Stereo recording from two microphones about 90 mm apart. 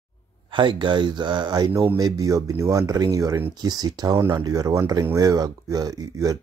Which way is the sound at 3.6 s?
50° right (ahead or behind).